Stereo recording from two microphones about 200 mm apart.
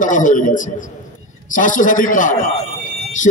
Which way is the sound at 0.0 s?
40° left (ahead or behind).